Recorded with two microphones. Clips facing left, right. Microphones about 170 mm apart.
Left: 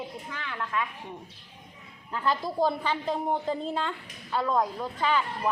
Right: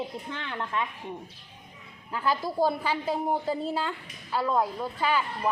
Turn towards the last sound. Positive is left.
turn(degrees=-10)  # may be behind; listen again after turning